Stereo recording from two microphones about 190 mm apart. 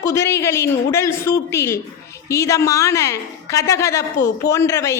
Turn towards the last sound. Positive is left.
turn(degrees=15)  # may be behind; listen again after turning